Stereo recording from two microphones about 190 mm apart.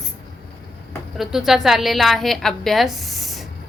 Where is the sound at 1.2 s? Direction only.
Centre (ahead or behind).